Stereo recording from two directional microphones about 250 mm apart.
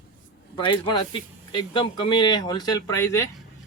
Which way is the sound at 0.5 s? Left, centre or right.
Centre.